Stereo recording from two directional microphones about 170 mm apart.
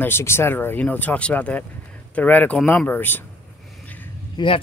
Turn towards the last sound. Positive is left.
turn(degrees=30)  # may be behind; listen again after turning